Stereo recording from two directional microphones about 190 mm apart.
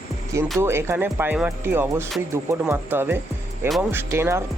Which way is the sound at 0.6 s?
15° right (ahead or behind).